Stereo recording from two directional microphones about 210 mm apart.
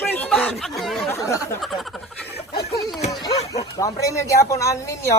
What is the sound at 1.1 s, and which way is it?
Speech, 15° left (ahead or behind).